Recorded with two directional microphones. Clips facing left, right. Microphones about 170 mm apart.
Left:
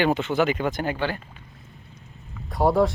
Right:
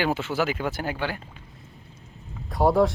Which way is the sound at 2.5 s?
Centre (ahead or behind).